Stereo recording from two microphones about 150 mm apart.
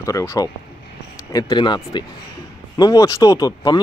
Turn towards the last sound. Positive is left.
turn(degrees=25)  # may be behind; listen again after turning